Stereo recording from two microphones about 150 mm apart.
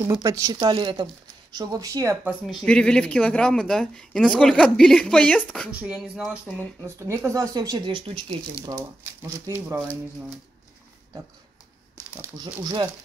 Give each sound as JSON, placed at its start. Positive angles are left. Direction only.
{"t": 0.1, "sound": "speech", "side_deg": -20}
{"t": 2.4, "sound": "speech", "side_deg": 5}
{"t": 5.7, "sound": "speech", "side_deg": -5}
{"t": 7.0, "sound": "speech", "side_deg": -20}
{"t": 8.7, "sound": "speech", "side_deg": -15}
{"t": 12.2, "sound": "speech", "side_deg": -15}